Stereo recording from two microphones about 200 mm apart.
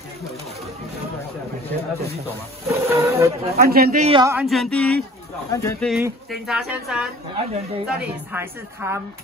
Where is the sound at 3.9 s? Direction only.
30° right (ahead or behind).